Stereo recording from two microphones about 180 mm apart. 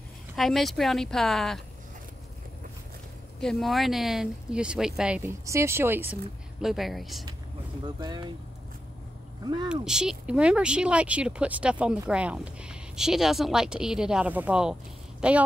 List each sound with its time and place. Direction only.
0.4 s speech: centre (ahead or behind)
3.3 s speech: centre (ahead or behind)
6.6 s speech: centre (ahead or behind)
8.0 s speech: 25° right (ahead or behind)
9.4 s speech: 20° right (ahead or behind)
9.7 s speech: 5° right (ahead or behind)